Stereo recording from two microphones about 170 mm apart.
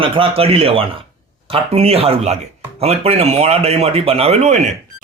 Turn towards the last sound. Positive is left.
turn(degrees=-45)  # may be behind; listen again after turning